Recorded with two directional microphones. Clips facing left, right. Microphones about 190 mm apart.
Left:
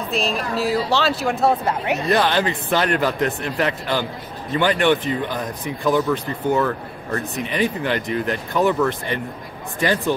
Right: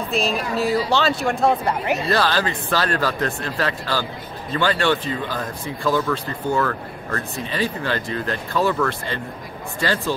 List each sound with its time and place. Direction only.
0.1 s speech: centre (ahead or behind)
2.0 s speech: 20° left (ahead or behind)